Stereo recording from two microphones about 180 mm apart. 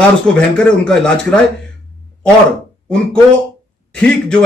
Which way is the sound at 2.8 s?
5° left (ahead or behind).